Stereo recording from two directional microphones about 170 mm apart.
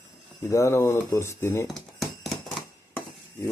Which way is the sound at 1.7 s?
Centre (ahead or behind).